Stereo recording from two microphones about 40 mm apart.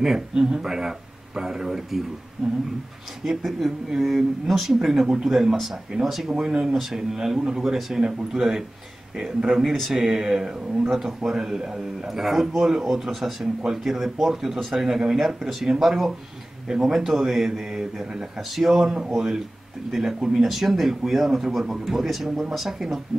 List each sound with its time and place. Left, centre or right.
0.0 s a man's voice: centre
3.3 s speech: centre
4.8 s a man's voice: centre